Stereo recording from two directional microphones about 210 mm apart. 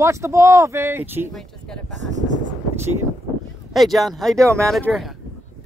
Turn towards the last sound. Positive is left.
turn(degrees=0)  # may be behind; listen again after turning